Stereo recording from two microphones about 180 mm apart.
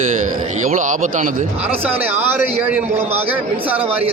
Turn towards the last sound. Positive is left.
turn(degrees=-10)  # may be behind; listen again after turning